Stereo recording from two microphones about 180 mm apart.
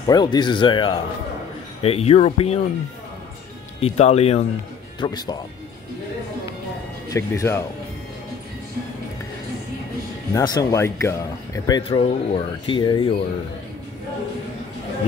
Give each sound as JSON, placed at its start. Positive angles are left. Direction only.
{"t": 0.0, "sound": "speech", "side_deg": 25}
{"t": 3.8, "sound": "speech", "side_deg": 35}
{"t": 5.0, "sound": "speech", "side_deg": 20}
{"t": 7.1, "sound": "speech", "side_deg": 15}
{"t": 10.3, "sound": "speech", "side_deg": 20}